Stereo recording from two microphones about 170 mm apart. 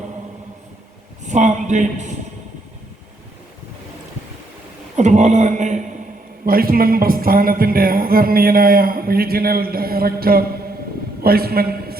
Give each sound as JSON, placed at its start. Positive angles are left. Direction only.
{"t": 1.2, "sound": "a man's voice", "side_deg": -45}
{"t": 4.9, "sound": "a man's voice", "side_deg": -45}
{"t": 6.4, "sound": "a man's voice", "side_deg": -60}